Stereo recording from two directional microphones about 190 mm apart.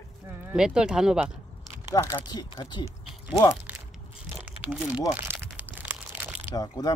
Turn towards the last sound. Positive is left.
turn(degrees=20)  # may be behind; listen again after turning